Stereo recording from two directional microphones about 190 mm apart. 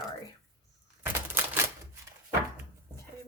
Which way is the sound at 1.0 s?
10° right (ahead or behind).